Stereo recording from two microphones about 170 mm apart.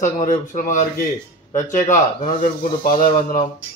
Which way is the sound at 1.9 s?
50° left (ahead or behind).